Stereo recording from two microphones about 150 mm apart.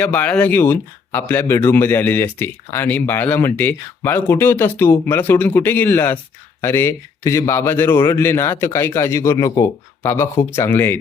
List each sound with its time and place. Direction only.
0.0 s speech: 10° left (ahead or behind)